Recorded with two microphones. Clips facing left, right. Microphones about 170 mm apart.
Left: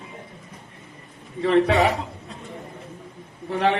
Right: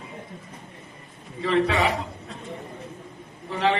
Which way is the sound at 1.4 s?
55° left (ahead or behind).